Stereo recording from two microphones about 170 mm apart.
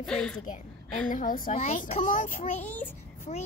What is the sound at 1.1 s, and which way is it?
Speech, 50° left (ahead or behind).